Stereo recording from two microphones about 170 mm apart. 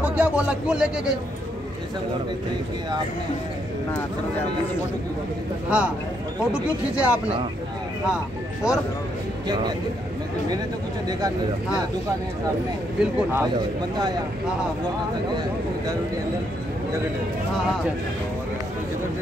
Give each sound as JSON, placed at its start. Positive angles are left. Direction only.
{"t": 0.0, "sound": "speech", "side_deg": -10}
{"t": 5.7, "sound": "speech", "side_deg": -5}
{"t": 8.6, "sound": "speech", "side_deg": -5}
{"t": 9.5, "sound": "speech", "side_deg": -25}
{"t": 11.1, "sound": "speech", "side_deg": -20}
{"t": 13.0, "sound": "speech", "side_deg": -10}